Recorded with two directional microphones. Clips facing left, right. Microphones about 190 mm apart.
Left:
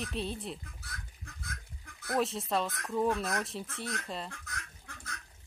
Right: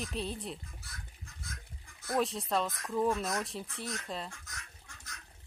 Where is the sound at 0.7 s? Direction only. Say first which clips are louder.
Left 2 dB; 60° left (ahead or behind).